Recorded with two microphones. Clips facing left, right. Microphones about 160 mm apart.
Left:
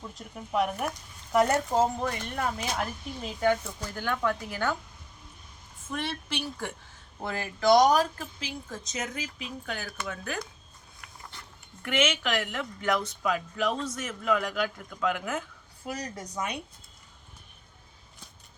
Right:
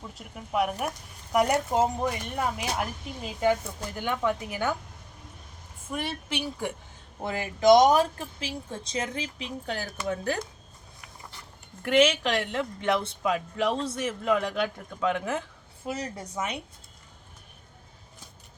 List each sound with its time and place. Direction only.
0.0 s speech: 5° right (ahead or behind)
5.9 s speech: 15° right (ahead or behind); by 10.4 s 30° right (ahead or behind)
11.8 s speech: 35° right (ahead or behind)